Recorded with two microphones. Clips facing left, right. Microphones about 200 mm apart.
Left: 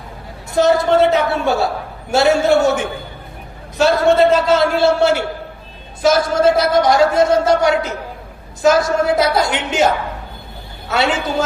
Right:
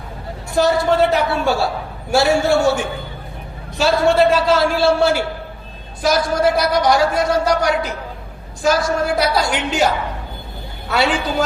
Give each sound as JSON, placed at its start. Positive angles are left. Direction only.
{"t": 0.5, "sound": "a woman's voice", "side_deg": 20}